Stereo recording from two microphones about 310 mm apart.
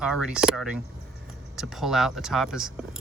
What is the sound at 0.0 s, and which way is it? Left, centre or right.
Speech, centre.